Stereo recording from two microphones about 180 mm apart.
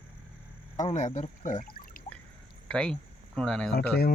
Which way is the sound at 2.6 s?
5° left (ahead or behind).